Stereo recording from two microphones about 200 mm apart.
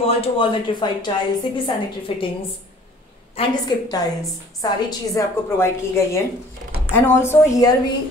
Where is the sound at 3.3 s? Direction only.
20° left (ahead or behind).